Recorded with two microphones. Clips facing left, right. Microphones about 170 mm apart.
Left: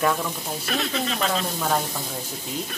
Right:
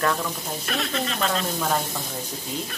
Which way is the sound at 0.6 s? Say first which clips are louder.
Left 1 dB; centre (ahead or behind).